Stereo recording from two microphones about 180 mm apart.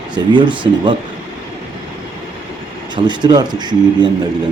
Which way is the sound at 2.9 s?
25° right (ahead or behind).